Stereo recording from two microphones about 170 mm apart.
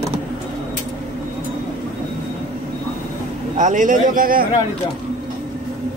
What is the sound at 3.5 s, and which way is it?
Speech, 50° right (ahead or behind).